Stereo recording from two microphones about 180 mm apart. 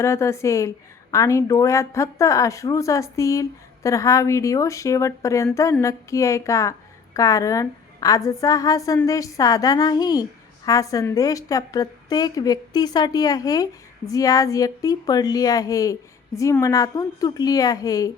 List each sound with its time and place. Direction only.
0.0 s a woman's voice: 15° left (ahead or behind)